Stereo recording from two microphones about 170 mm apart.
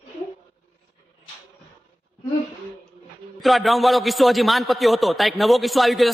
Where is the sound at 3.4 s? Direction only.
Centre (ahead or behind).